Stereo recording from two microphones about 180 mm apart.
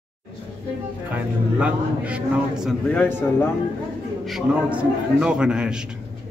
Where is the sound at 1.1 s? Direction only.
5° right (ahead or behind).